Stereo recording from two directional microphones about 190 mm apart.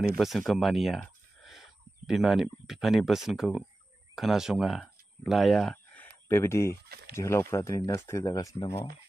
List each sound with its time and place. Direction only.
0.1 s speech: centre (ahead or behind)
6.2 s speech: 15° left (ahead or behind)
6.9 s a sound: 55° right (ahead or behind)
7.2 s speech: 15° left (ahead or behind)